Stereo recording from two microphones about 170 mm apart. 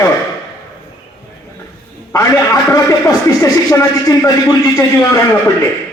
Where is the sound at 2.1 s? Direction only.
20° left (ahead or behind).